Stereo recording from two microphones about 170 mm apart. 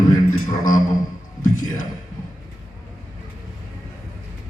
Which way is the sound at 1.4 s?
50° left (ahead or behind).